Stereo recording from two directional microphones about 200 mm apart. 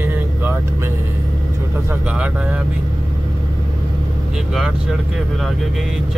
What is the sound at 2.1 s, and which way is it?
Speech, 5° right (ahead or behind).